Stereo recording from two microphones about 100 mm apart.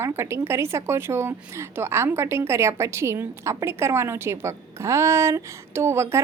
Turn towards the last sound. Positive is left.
turn(degrees=-25)  # may be behind; listen again after turning